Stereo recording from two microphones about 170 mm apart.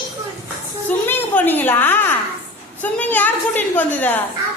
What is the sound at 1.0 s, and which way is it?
A woman's voice, 10° left (ahead or behind).